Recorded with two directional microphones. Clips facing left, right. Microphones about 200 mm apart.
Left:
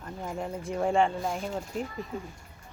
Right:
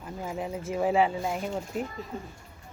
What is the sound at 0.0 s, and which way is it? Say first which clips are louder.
Speech: right 1 dB; 5° right (ahead or behind).